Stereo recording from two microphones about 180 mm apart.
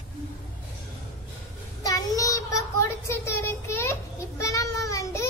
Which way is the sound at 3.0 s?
15° left (ahead or behind).